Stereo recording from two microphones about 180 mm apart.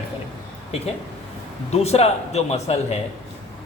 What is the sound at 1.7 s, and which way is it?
Speech, 35° left (ahead or behind).